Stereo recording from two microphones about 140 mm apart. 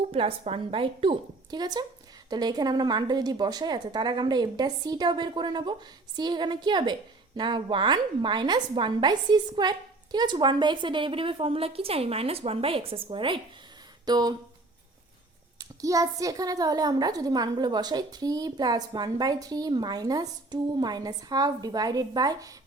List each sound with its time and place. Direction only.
0.1 s a woman's voice: 40° right (ahead or behind)
15.5 s a woman's voice: 25° right (ahead or behind)